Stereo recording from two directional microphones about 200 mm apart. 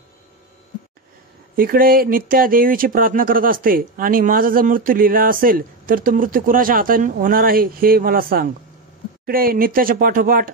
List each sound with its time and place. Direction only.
1.6 s speech: 45° right (ahead or behind)